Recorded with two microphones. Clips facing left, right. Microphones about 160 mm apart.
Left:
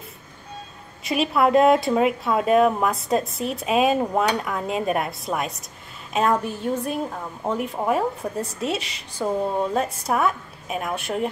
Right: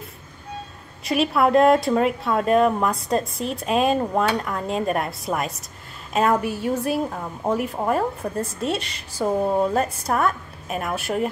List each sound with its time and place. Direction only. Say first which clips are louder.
1.0 s speech: right 1 dB; centre (ahead or behind)